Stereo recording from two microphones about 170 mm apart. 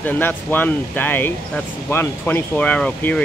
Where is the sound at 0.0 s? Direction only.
10° left (ahead or behind).